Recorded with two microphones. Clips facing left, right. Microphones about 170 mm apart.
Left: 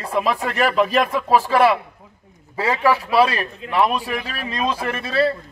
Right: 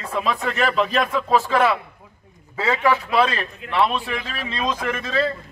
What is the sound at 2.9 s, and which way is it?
Speech, 10° left (ahead or behind).